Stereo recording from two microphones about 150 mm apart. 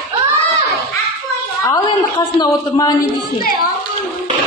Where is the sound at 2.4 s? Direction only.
25° left (ahead or behind).